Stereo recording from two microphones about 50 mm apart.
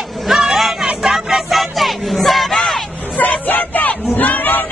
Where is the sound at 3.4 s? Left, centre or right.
Left.